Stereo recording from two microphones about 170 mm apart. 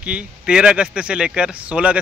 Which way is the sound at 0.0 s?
5° right (ahead or behind).